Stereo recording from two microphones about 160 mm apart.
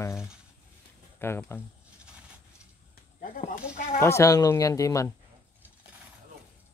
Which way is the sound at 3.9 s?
20° left (ahead or behind).